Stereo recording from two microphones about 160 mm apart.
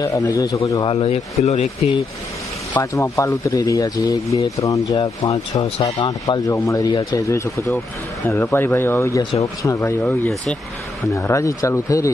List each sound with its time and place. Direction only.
0.0 s speech: 20° left (ahead or behind)
0.9 s speech: 40° left (ahead or behind)
2.7 s speech: 20° left (ahead or behind)